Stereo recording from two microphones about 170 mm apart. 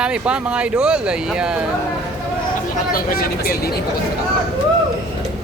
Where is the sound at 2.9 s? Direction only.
60° left (ahead or behind).